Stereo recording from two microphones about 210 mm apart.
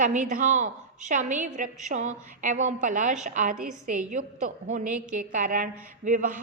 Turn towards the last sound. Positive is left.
turn(degrees=-40)  # may be behind; listen again after turning